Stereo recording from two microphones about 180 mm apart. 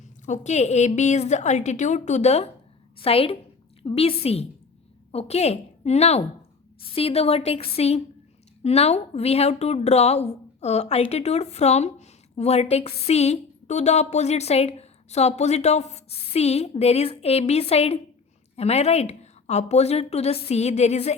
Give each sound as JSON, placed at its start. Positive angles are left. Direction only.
{"t": 0.3, "sound": "a woman's voice", "side_deg": 40}